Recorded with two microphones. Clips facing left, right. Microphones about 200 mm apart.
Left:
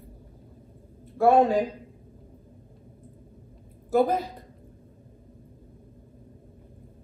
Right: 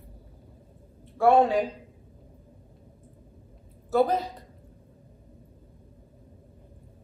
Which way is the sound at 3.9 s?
10° left (ahead or behind).